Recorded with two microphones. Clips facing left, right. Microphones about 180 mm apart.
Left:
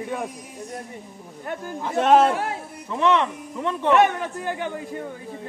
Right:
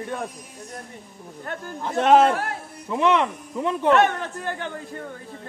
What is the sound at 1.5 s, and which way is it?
Speech, 10° left (ahead or behind).